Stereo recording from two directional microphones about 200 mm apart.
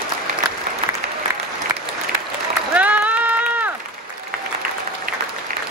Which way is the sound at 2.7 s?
5° right (ahead or behind).